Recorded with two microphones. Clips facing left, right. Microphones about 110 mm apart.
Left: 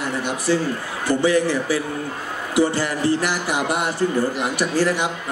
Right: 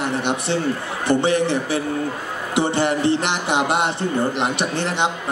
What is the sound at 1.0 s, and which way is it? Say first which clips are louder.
Speech: even; 25° right (ahead or behind).